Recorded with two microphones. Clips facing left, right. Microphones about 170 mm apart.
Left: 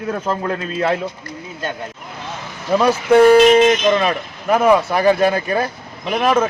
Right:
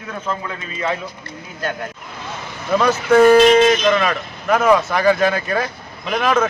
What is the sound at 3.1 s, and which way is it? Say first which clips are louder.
Speech: left 1 dB; 15° left (ahead or behind).